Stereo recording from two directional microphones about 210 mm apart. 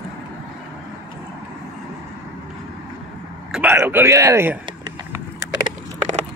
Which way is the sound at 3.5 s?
10° right (ahead or behind).